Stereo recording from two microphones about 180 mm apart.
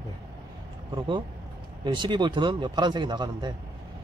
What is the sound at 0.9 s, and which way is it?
Speech, 25° right (ahead or behind).